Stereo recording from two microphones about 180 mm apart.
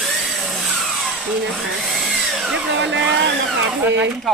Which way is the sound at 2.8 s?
85° right.